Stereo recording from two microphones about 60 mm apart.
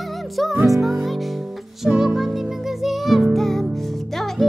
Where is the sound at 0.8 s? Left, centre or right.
Centre.